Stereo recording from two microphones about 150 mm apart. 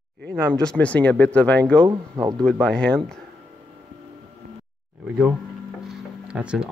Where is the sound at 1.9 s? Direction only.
25° right (ahead or behind).